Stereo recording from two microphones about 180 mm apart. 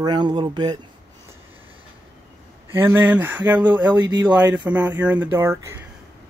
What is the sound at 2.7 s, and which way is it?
Speech, 10° right (ahead or behind).